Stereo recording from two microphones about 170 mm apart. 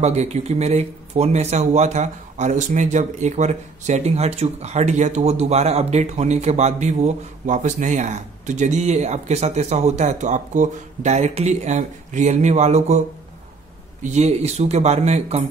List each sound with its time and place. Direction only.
0.0 s speech: 40° right (ahead or behind)
14.0 s speech: 40° right (ahead or behind)